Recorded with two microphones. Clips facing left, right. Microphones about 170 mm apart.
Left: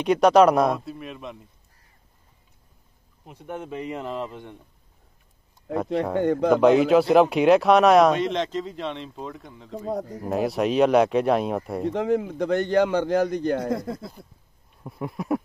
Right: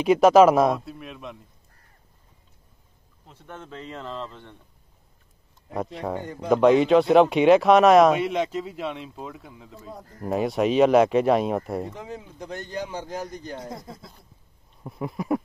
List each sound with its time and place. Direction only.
0.0 s speech: 5° right (ahead or behind)
3.3 s speech: 15° left (ahead or behind)
6.1 s a man's voice: 70° left (ahead or behind)
6.5 s speech: centre (ahead or behind)
11.9 s a man's voice: 75° left (ahead or behind)
14.8 s speech: centre (ahead or behind)